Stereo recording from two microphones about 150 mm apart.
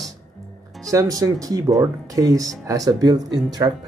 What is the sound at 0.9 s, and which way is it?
Speech, 20° right (ahead or behind).